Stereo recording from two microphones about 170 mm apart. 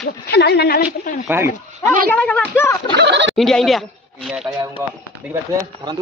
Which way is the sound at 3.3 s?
Centre (ahead or behind).